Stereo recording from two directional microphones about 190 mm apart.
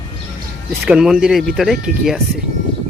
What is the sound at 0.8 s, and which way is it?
Speech, 5° right (ahead or behind).